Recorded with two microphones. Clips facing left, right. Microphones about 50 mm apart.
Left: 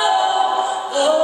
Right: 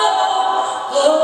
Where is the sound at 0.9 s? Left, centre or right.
Centre.